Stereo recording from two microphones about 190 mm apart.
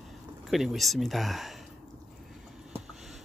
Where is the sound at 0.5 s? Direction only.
Centre (ahead or behind).